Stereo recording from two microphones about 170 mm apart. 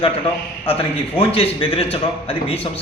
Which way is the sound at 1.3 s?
35° left (ahead or behind).